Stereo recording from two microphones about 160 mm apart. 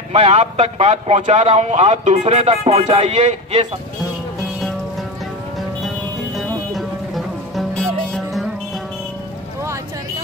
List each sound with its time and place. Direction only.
0.1 s a man's voice: 40° right (ahead or behind)
6.3 s music: centre (ahead or behind)